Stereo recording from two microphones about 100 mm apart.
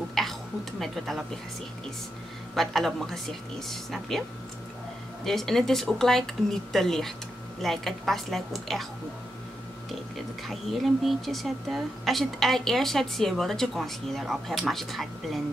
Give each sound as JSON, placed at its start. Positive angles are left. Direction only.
{"t": 0.1, "sound": "a sound", "side_deg": 0}
{"t": 2.5, "sound": "a woman's voice", "side_deg": 5}
{"t": 5.2, "sound": "a woman's voice", "side_deg": 5}
{"t": 10.5, "sound": "a woman's voice", "side_deg": 0}